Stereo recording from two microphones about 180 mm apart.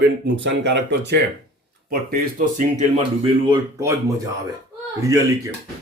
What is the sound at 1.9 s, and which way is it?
Speech, 50° right (ahead or behind).